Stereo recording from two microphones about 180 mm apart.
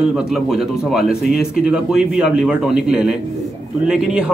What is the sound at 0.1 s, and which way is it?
A man's voice, 5° right (ahead or behind).